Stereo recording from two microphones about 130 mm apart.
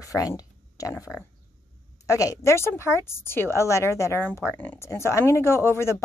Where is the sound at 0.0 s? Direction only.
25° left (ahead or behind).